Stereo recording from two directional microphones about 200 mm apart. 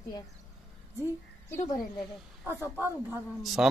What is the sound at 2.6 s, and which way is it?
A man's voice, 10° right (ahead or behind).